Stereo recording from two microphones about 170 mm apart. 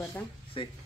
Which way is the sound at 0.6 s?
30° left (ahead or behind).